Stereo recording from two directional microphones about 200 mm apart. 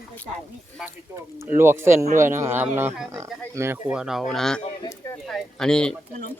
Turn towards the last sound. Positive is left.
turn(degrees=5)  # may be behind; listen again after turning